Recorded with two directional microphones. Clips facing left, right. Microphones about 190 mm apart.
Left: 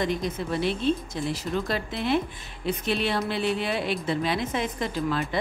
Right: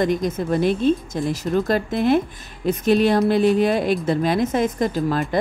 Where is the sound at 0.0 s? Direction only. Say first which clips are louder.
Right 7 dB; 45° right (ahead or behind).